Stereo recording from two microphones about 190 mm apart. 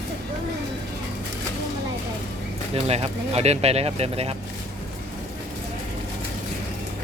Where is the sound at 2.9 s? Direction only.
35° right (ahead or behind).